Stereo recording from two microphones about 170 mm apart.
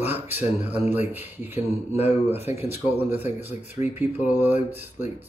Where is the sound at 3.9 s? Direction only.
10° right (ahead or behind).